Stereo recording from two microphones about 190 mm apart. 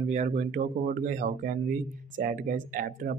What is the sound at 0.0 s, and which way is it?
Speech, 40° right (ahead or behind).